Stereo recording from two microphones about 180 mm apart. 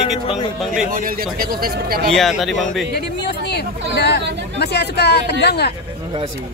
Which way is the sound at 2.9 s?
65° left (ahead or behind).